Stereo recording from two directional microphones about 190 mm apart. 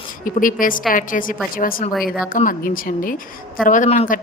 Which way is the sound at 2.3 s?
45° left (ahead or behind).